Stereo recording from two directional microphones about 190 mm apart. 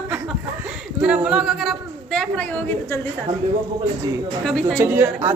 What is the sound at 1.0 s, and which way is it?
A man's voice, 5° right (ahead or behind).